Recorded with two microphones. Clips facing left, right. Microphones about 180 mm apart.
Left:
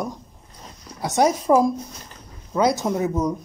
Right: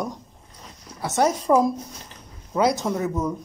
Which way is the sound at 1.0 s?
10° left (ahead or behind).